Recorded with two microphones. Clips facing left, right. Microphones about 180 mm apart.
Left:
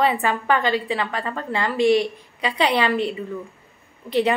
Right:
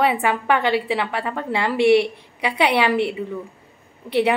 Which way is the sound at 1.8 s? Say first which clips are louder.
Right 2 dB; 70° right (ahead or behind).